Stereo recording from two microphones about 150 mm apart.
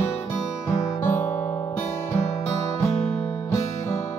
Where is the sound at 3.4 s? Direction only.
20° left (ahead or behind).